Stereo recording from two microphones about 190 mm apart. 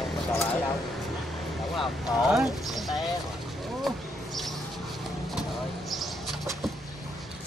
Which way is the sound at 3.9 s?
Centre (ahead or behind).